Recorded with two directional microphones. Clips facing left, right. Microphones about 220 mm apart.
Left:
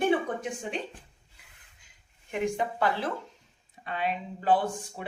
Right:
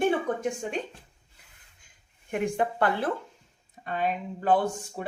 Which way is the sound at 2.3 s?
55° right (ahead or behind).